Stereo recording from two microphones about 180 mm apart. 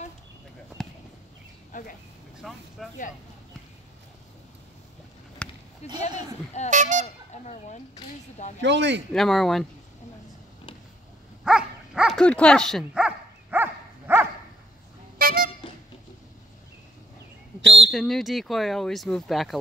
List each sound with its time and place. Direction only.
1.7 s speech: 50° left (ahead or behind)
2.3 s speech: centre (ahead or behind)
5.4 s basketball bounce: 5° left (ahead or behind)
6.0 s speech: 40° left (ahead or behind)
6.7 s speech: 45° right (ahead or behind)
7.4 s speech: 40° left (ahead or behind)
8.5 s speech: 75° right (ahead or behind)
9.1 s speech: centre (ahead or behind)
11.4 s dog: 5° right (ahead or behind)
15.1 s vehicle: 55° right (ahead or behind)
17.9 s speech: centre (ahead or behind)